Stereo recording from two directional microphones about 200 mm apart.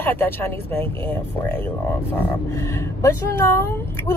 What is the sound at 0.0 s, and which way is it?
Speech, 10° left (ahead or behind).